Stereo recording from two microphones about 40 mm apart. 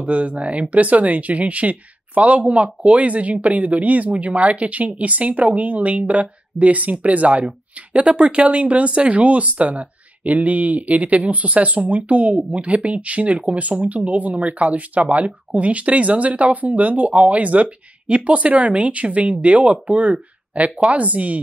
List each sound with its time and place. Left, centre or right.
0.0 s speech: right